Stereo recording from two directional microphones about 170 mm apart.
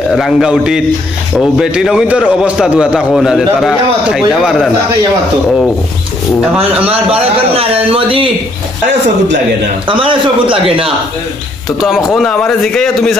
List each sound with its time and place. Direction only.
0.1 s a man's voice: centre (ahead or behind)
6.5 s a man's voice: 5° right (ahead or behind)
7.1 s speech: 35° right (ahead or behind)
9.8 s speech: 30° right (ahead or behind)
12.2 s a man's voice: 5° left (ahead or behind)